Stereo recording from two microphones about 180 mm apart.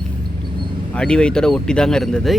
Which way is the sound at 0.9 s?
5° left (ahead or behind).